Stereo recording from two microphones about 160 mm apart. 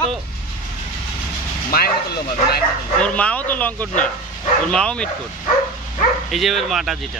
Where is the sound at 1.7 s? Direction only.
75° left (ahead or behind).